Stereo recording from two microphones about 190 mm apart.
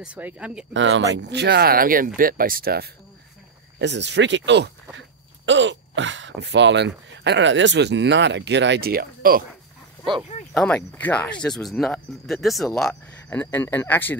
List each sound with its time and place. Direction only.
0.0 s speech: 5° right (ahead or behind)
0.7 s speech: 80° right; by 2.9 s 55° right (ahead or behind)
3.8 s speech: 65° right (ahead or behind); by 9.4 s 50° right (ahead or behind)
10.5 s speech: 5° left (ahead or behind)